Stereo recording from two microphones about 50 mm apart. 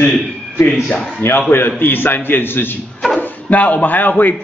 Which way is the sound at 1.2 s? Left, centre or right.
Left.